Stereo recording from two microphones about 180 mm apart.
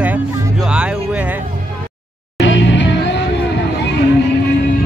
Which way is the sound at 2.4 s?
90° left.